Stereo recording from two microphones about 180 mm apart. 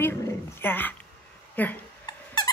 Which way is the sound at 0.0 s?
10° left (ahead or behind).